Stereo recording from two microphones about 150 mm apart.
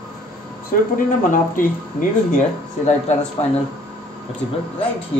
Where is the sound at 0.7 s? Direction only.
65° left (ahead or behind).